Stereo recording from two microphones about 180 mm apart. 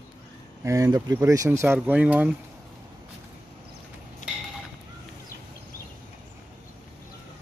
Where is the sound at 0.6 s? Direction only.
15° right (ahead or behind).